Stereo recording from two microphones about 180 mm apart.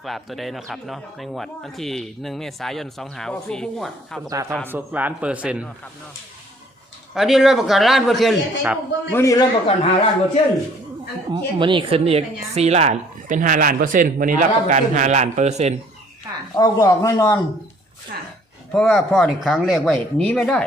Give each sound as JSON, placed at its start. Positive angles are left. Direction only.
{"t": 0.0, "sound": "speech", "side_deg": 0}
{"t": 4.3, "sound": "a man's voice", "side_deg": -20}
{"t": 7.1, "sound": "speech", "side_deg": 0}
{"t": 9.1, "sound": "a man's voice", "side_deg": 20}
{"t": 9.6, "sound": "speech", "side_deg": 35}
{"t": 11.3, "sound": "a woman's voice", "side_deg": -25}
{"t": 16.6, "sound": "speech", "side_deg": 20}
{"t": 18.1, "sound": "speech", "side_deg": -55}
{"t": 18.7, "sound": "speech", "side_deg": 5}